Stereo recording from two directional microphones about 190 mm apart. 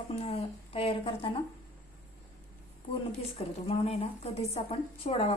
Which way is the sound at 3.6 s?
30° left (ahead or behind).